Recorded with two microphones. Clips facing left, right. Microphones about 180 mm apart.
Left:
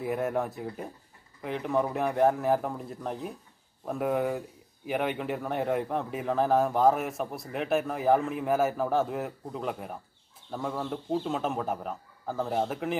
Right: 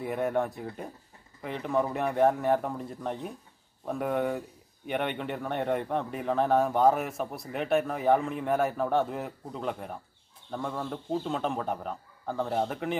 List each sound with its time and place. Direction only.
0.0 s speech: centre (ahead or behind)